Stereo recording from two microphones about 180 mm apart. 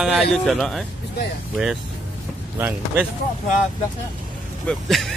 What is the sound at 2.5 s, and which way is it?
Speech, 10° right (ahead or behind).